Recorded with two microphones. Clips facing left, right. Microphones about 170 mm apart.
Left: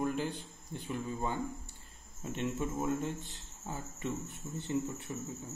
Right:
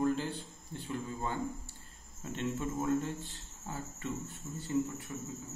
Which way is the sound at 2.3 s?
20° left (ahead or behind).